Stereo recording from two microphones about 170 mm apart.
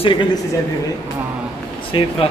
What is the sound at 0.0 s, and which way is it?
Speech, 25° left (ahead or behind).